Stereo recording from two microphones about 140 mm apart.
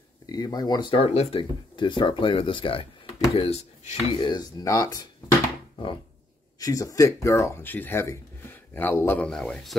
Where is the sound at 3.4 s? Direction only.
50° left (ahead or behind).